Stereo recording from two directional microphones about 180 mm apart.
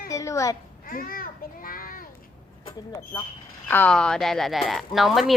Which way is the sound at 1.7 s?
50° left (ahead or behind).